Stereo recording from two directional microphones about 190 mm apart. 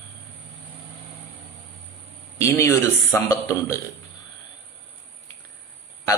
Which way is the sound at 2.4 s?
15° left (ahead or behind).